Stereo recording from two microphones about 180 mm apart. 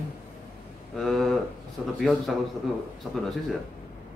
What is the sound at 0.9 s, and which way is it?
Speech, centre (ahead or behind).